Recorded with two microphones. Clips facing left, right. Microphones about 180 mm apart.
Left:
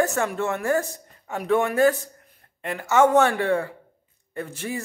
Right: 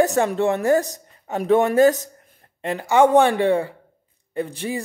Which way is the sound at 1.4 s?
40° right (ahead or behind).